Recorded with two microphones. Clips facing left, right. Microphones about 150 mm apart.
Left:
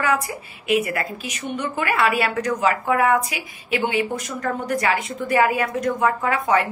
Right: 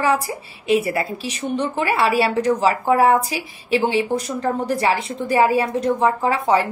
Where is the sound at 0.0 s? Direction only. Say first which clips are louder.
Right 3 dB; 30° right (ahead or behind).